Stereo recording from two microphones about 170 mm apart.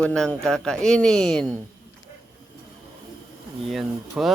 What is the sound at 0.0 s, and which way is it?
Speech, 5° left (ahead or behind).